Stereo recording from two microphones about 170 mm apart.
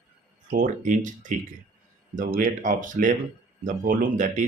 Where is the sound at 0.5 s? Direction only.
50° right (ahead or behind).